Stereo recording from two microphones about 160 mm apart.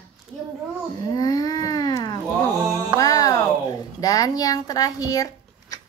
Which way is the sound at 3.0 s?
20° left (ahead or behind).